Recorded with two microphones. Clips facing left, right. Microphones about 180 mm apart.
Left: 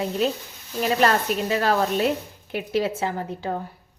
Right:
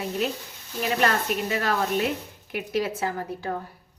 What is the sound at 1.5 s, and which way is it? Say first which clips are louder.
A woman's voice: left 5 dB; 30° left (ahead or behind).